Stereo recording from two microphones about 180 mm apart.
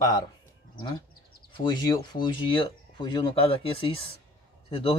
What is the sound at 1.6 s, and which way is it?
A man's voice, 25° left (ahead or behind).